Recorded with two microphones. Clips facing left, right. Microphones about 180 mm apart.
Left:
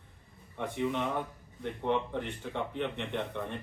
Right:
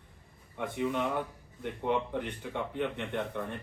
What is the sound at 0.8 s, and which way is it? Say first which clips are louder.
Speech: right 1 dB; 5° right (ahead or behind).